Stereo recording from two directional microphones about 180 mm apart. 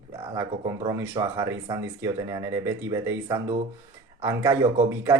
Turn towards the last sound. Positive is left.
turn(degrees=-15)  # may be behind; listen again after turning